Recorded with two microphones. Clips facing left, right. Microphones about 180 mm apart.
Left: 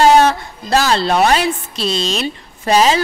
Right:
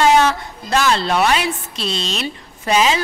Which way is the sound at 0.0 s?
35° left (ahead or behind).